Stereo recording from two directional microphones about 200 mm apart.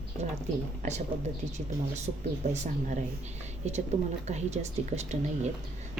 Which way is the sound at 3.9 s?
35° right (ahead or behind).